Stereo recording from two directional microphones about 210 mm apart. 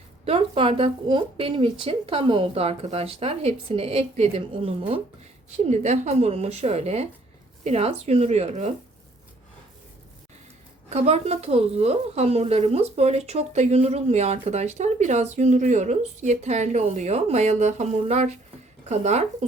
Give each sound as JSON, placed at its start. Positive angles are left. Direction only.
{"t": 0.3, "sound": "speech", "side_deg": -25}
{"t": 10.8, "sound": "speech", "side_deg": -30}